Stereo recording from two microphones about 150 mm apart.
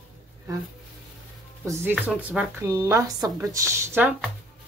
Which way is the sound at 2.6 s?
20° right (ahead or behind).